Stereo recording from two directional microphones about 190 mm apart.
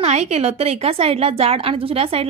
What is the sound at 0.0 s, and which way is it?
A woman's voice, 35° right (ahead or behind).